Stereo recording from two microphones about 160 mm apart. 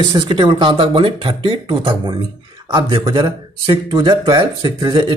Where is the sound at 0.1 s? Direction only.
30° right (ahead or behind).